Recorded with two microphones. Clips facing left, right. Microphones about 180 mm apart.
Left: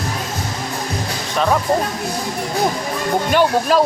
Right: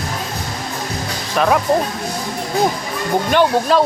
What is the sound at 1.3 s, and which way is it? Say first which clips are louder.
Speech: right 2 dB; 5° right (ahead or behind).